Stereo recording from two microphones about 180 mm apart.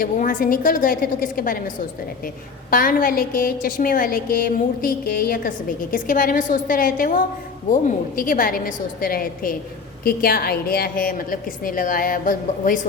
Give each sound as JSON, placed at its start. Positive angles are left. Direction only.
{"t": 0.0, "sound": "a woman's voice", "side_deg": 50}